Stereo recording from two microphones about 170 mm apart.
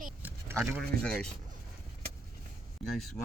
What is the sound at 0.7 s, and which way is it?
Speech, 5° left (ahead or behind).